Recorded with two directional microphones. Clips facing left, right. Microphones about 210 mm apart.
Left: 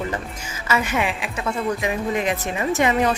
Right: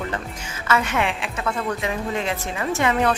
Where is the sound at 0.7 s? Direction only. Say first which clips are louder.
Even; 10° left (ahead or behind).